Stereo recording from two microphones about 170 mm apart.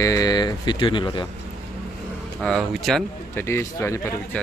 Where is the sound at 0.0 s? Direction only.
20° left (ahead or behind).